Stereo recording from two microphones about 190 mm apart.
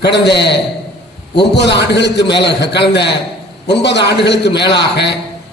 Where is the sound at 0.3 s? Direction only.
65° left (ahead or behind).